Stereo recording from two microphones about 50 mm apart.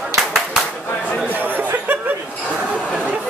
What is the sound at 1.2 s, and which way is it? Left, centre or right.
Chatter, right.